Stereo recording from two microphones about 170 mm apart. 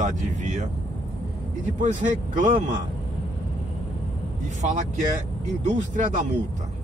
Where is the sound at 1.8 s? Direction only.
45° right (ahead or behind).